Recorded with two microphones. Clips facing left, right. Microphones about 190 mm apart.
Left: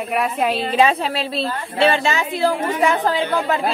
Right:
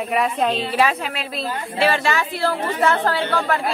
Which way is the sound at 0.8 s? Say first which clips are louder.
Left 7 dB; 25° left (ahead or behind).